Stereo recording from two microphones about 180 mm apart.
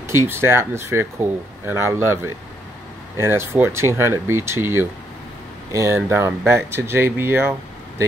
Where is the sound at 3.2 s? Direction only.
10° right (ahead or behind).